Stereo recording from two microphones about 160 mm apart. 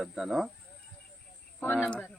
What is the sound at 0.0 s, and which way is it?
Speech, centre (ahead or behind).